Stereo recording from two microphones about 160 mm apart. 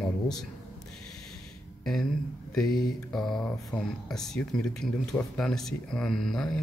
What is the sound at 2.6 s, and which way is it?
Speech, centre (ahead or behind).